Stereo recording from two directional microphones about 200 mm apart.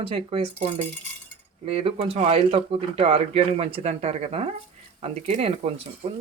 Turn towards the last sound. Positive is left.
turn(degrees=-35)  # may be behind; listen again after turning